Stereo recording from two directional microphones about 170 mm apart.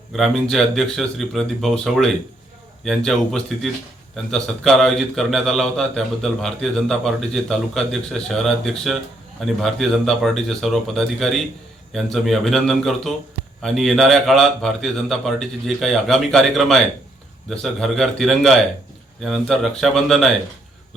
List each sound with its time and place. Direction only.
0.1 s a man's voice: centre (ahead or behind)